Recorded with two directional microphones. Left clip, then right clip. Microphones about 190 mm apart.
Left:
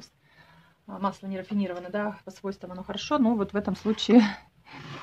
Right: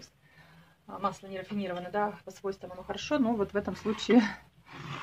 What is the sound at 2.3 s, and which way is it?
Speech, 80° left.